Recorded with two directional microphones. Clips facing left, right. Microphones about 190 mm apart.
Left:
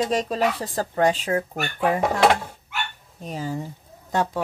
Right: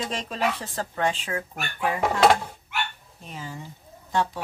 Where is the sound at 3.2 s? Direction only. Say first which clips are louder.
Left 9 dB; 40° left (ahead or behind).